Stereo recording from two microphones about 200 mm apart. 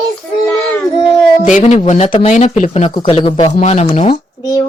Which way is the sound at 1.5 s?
35° left (ahead or behind).